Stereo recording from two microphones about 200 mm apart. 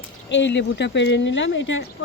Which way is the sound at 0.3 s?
65° left (ahead or behind).